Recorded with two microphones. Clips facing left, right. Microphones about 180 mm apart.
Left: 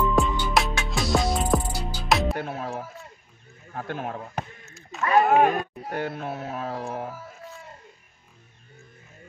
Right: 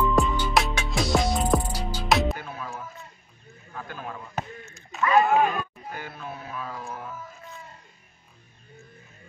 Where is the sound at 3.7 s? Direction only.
70° left (ahead or behind).